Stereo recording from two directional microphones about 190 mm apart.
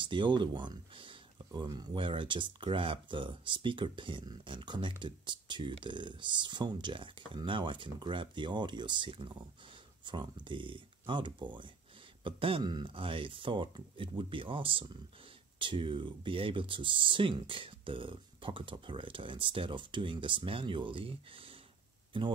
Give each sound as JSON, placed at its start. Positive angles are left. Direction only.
{"t": 0.0, "sound": "speech", "side_deg": -25}